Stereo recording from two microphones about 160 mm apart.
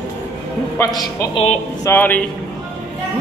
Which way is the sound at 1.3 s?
40° left (ahead or behind).